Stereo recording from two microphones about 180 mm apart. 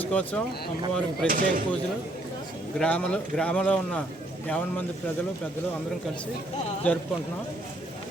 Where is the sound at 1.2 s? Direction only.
50° right (ahead or behind).